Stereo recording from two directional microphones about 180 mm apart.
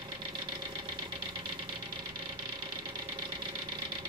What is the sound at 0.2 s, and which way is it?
Engine, 25° right (ahead or behind).